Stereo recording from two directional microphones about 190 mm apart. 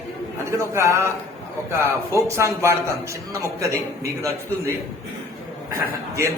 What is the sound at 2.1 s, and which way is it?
Speech, 15° right (ahead or behind).